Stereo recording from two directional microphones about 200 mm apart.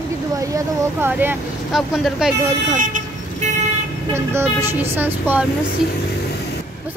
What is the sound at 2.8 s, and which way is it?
Vehicle, 40° right (ahead or behind).